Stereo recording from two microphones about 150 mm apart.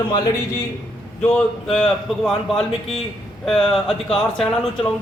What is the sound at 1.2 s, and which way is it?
Speech, 5° left (ahead or behind).